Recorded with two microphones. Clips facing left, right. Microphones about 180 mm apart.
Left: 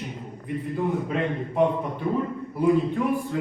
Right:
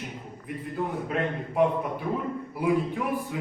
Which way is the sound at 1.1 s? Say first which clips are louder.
Left 2 dB; 5° right (ahead or behind).